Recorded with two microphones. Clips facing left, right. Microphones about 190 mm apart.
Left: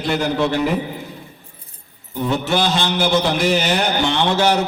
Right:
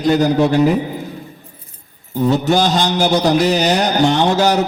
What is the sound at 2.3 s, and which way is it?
A man's voice, 40° right (ahead or behind).